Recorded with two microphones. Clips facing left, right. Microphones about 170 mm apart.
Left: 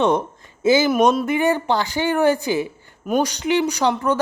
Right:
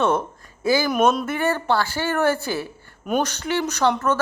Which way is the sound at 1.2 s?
15° left (ahead or behind).